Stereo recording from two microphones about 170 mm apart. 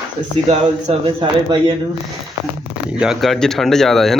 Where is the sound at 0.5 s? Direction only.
35° right (ahead or behind).